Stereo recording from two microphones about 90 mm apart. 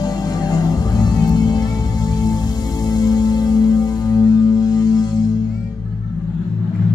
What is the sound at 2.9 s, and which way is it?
Music, 45° left (ahead or behind).